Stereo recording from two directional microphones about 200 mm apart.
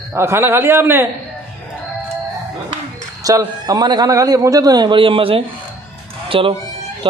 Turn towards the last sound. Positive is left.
turn(degrees=-25)  # may be behind; listen again after turning